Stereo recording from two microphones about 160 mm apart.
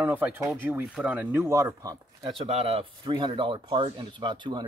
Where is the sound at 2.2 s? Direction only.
35° right (ahead or behind).